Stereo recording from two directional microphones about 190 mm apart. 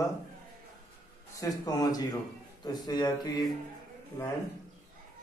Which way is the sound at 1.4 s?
20° left (ahead or behind).